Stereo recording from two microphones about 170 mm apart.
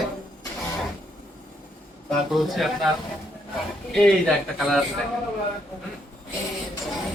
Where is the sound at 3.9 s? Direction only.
Centre (ahead or behind).